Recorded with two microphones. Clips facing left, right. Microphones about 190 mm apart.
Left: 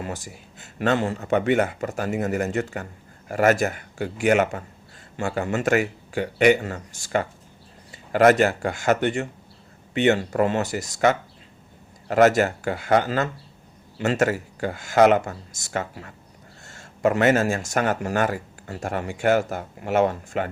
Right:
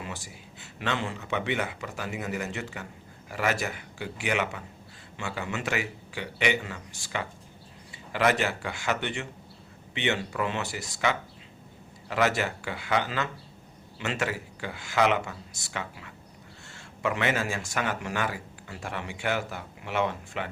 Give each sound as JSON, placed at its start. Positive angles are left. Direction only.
{"t": 0.0, "sound": "speech", "side_deg": 45}